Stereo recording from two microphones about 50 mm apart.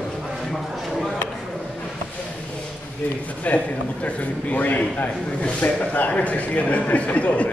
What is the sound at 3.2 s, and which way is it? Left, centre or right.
A man's voice, left.